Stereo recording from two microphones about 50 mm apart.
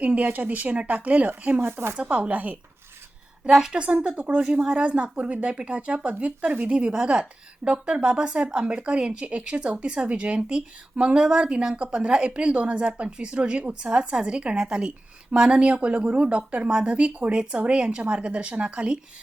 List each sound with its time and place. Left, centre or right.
0.0 s speech: right
1.6 s speech: right
2.0 s speech: right
3.5 s a woman's voice: centre
3.8 s speech: right
6.7 s speech: centre